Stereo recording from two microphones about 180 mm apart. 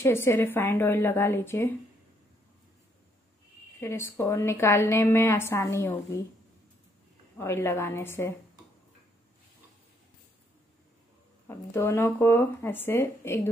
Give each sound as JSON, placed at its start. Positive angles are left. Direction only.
{"t": 0.0, "sound": "a woman's voice", "side_deg": 15}
{"t": 3.8, "sound": "a woman's voice", "side_deg": 15}
{"t": 7.3, "sound": "a woman's voice", "side_deg": 15}
{"t": 11.4, "sound": "a woman's voice", "side_deg": 15}